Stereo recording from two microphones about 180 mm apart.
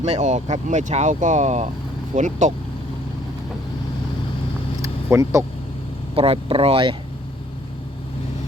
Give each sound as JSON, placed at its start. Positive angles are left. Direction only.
{"t": 0.0, "sound": "speech", "side_deg": -40}
{"t": 4.8, "sound": "vehicle", "side_deg": -15}
{"t": 6.1, "sound": "speech", "side_deg": -30}